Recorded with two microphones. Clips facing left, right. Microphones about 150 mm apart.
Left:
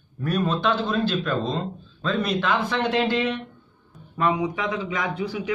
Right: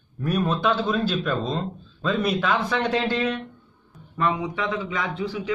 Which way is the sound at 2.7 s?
5° left (ahead or behind).